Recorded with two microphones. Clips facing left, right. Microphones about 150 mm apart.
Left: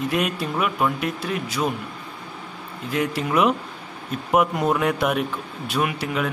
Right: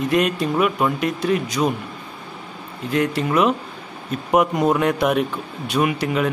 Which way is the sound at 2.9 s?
10° left (ahead or behind).